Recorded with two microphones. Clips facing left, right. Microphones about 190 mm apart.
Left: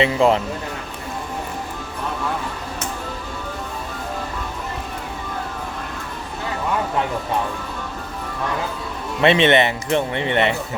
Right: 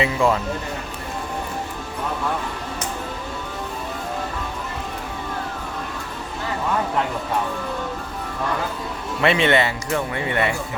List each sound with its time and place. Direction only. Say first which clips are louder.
0.0 s speech: left 3 dB; 25° left (ahead or behind)
9.2 s speech: left 3 dB; 20° left (ahead or behind)